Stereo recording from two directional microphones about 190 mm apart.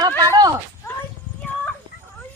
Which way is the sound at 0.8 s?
15° left (ahead or behind).